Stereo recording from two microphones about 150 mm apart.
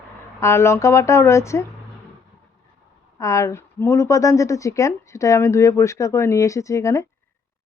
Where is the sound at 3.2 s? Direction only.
20° left (ahead or behind).